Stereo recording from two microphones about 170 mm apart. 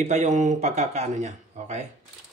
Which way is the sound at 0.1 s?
45° right (ahead or behind).